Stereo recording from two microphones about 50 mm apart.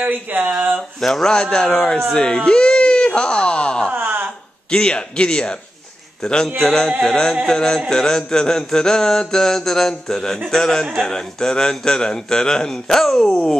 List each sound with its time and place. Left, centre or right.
0.0 s speech: right
1.0 s a man's voice: centre
2.1 s baby cry: centre
3.9 s a sound: right
4.6 s a man's voice: centre